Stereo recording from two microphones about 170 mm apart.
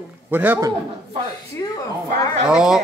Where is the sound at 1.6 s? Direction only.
20° left (ahead or behind).